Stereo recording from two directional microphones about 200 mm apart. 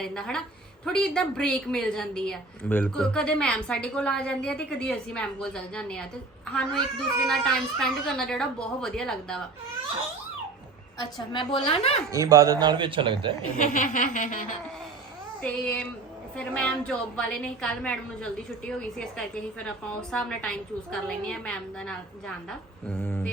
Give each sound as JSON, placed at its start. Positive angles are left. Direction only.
{"t": 0.0, "sound": "a woman's voice", "side_deg": 5}
{"t": 7.3, "sound": "a woman's voice", "side_deg": 0}
{"t": 10.9, "sound": "a woman's voice", "side_deg": 25}
{"t": 12.1, "sound": "a man's voice", "side_deg": -15}
{"t": 13.6, "sound": "a sound", "side_deg": 40}
{"t": 15.4, "sound": "a woman's voice", "side_deg": 5}